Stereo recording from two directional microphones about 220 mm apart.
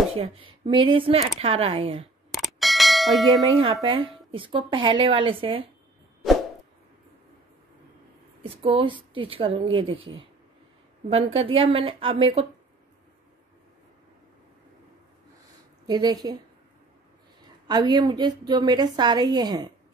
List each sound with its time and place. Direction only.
0.1 s a woman's voice: 25° right (ahead or behind)
2.3 s bell: centre (ahead or behind)
3.8 s a woman's voice: 25° right (ahead or behind)
8.4 s a woman's voice: 25° right (ahead or behind)
15.9 s a woman's voice: 20° right (ahead or behind)
17.6 s a woman's voice: 20° right (ahead or behind)